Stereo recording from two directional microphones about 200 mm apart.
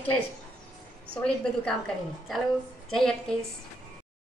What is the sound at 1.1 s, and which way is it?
Speech, 5° left (ahead or behind).